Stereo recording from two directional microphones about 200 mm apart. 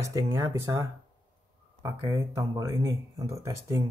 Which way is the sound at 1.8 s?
20° right (ahead or behind).